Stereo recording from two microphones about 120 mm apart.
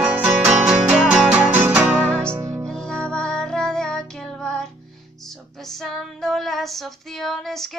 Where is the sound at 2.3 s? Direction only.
20° right (ahead or behind).